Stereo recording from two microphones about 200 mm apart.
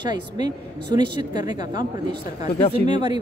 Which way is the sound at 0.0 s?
20° right (ahead or behind).